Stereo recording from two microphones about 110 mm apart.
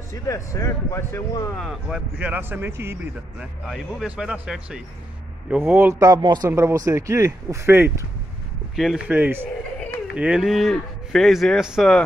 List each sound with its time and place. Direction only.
0.1 s speech: 30° left (ahead or behind)
1.9 s speech: 10° right (ahead or behind)
3.3 s cattle: 5° right (ahead or behind)
5.6 s speech: 20° right (ahead or behind); by 6.5 s 40° right (ahead or behind)
6.5 s speech: 25° right (ahead or behind)
8.7 s speech: 5° right (ahead or behind)
10.1 s cattle: 10° right (ahead or behind)